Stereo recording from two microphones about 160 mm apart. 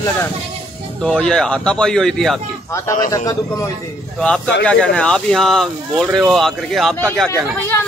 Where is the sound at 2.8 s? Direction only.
20° left (ahead or behind).